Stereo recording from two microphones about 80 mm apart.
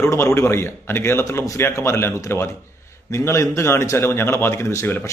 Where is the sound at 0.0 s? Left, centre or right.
Left.